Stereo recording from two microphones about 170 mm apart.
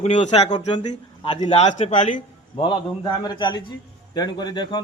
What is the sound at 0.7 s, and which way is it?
A man's voice, 25° left (ahead or behind).